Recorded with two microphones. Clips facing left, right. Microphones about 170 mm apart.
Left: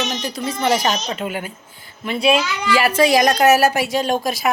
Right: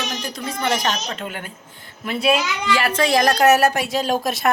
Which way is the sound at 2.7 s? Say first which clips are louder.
Left 4 dB; 10° left (ahead or behind).